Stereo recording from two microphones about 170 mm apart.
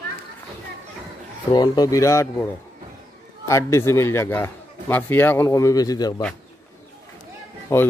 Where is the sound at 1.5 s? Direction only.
25° left (ahead or behind).